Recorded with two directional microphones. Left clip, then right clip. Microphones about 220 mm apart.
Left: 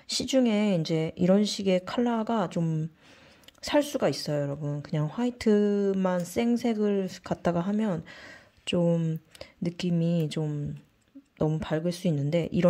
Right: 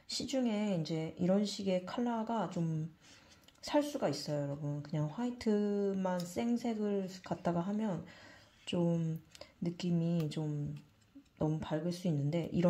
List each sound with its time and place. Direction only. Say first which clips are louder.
0.1 s speech: left 11 dB; 40° left (ahead or behind)